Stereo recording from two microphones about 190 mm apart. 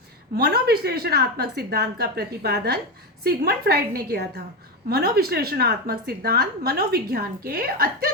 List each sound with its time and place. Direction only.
0.3 s a woman's voice: 55° right (ahead or behind)